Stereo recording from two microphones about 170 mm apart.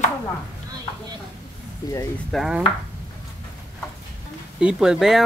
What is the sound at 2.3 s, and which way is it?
Speech, 5° right (ahead or behind).